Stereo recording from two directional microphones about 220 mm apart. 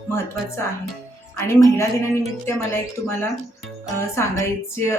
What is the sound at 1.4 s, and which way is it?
A woman's voice, 10° left (ahead or behind).